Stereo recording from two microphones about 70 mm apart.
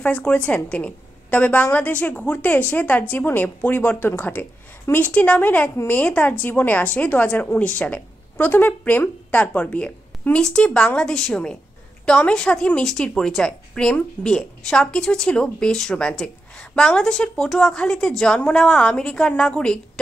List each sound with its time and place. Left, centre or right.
0.0 s a woman's voice: centre